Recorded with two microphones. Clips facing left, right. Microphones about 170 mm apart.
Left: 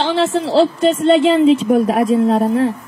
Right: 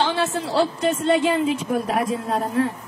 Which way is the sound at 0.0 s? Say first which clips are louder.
Left 6 dB; 25° left (ahead or behind).